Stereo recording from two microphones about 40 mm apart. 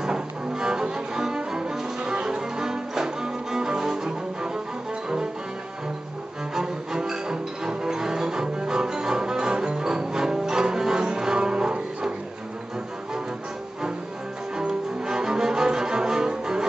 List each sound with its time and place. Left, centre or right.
0.0 s cello: centre
6.5 s music: centre
14.7 s cello: centre